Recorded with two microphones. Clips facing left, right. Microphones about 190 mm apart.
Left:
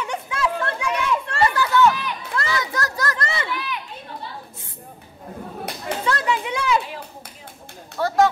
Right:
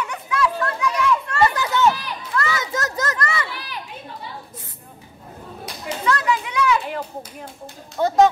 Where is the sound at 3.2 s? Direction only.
25° left (ahead or behind).